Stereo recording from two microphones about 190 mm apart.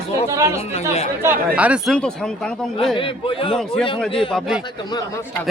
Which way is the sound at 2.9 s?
25° left (ahead or behind).